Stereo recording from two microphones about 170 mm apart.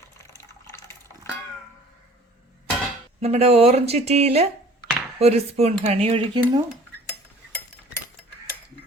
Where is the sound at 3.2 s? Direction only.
40° right (ahead or behind).